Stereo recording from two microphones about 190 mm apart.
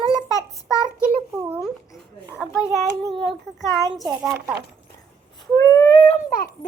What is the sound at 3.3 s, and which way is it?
Speech, centre (ahead or behind).